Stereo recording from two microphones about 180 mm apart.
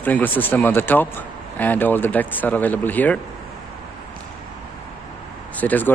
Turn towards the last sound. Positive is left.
turn(degrees=10)  # may be behind; listen again after turning